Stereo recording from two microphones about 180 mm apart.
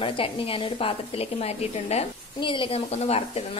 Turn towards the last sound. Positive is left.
turn(degrees=35)  # may be behind; listen again after turning